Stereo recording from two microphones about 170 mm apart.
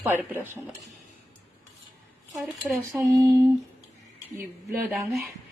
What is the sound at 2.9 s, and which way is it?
Female singing, 20° right (ahead or behind).